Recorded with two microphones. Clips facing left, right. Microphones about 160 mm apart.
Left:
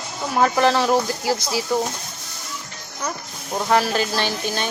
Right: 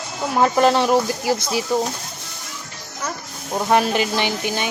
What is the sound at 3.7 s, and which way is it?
Speech, 20° right (ahead or behind).